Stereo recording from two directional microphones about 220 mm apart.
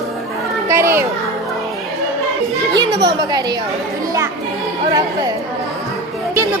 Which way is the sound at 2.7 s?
20° right (ahead or behind).